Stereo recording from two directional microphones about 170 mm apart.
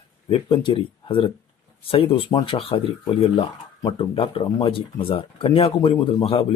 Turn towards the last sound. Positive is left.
turn(degrees=35)  # may be behind; listen again after turning